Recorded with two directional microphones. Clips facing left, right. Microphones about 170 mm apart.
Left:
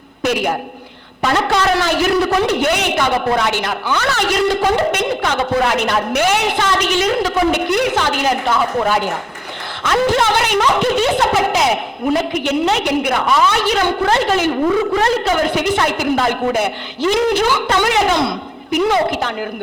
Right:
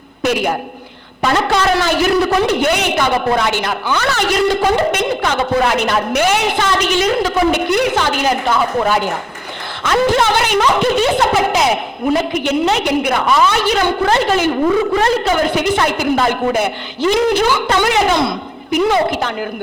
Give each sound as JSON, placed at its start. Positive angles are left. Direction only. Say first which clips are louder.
{"t": 0.2, "sound": "a sound", "louder": "right 1 dB", "side_deg": -10}
{"t": 1.2, "sound": "speech", "louder": "right 1 dB", "side_deg": -10}
{"t": 14.5, "sound": "a woman's voice", "louder": "right 1 dB", "side_deg": -20}
{"t": 15.0, "sound": "speech", "louder": "right 1 dB", "side_deg": -10}